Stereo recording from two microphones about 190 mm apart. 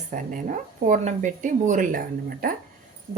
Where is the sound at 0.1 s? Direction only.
45° right (ahead or behind).